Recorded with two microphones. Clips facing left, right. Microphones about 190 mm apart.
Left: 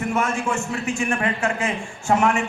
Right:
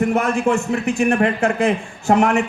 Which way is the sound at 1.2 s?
60° right (ahead or behind).